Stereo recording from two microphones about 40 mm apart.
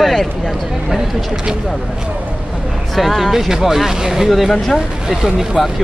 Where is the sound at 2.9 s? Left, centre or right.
Centre.